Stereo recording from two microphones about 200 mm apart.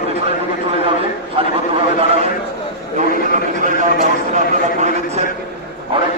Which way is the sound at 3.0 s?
35° right (ahead or behind).